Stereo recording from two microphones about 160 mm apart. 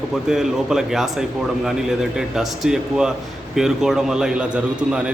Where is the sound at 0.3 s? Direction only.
5° right (ahead or behind).